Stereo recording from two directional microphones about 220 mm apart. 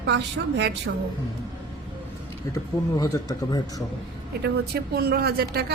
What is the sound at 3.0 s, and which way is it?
Speech, 15° left (ahead or behind).